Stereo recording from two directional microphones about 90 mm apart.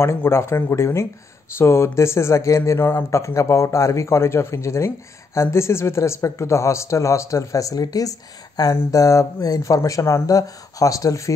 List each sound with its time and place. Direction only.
0.0 s speech: 25° left (ahead or behind)